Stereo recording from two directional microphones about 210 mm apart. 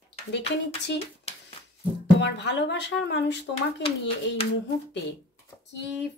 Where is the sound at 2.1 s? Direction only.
55° left (ahead or behind).